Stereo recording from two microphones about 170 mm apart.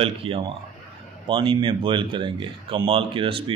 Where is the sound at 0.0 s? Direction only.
35° right (ahead or behind).